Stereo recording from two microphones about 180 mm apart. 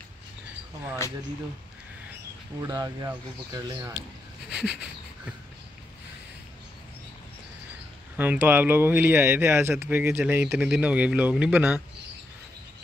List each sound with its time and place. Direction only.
2.6 s speech: 20° right (ahead or behind)
4.5 s a sound: 5° right (ahead or behind)
8.2 s speech: 10° right (ahead or behind)